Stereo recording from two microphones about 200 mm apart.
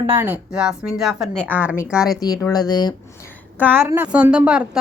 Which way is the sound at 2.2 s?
20° left (ahead or behind).